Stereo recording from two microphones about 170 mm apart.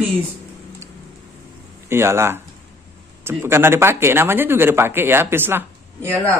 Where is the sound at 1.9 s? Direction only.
15° right (ahead or behind).